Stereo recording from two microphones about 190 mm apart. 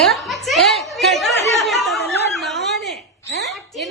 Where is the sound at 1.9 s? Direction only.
60° left (ahead or behind).